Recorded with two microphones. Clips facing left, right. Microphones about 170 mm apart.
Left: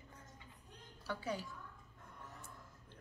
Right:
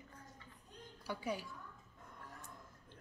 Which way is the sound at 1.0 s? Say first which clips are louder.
Even; 15° right (ahead or behind).